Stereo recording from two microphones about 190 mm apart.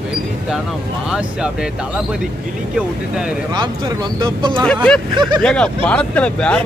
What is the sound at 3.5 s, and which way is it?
Speech, 25° right (ahead or behind).